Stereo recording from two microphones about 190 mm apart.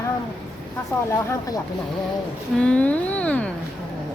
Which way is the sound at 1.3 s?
20° left (ahead or behind).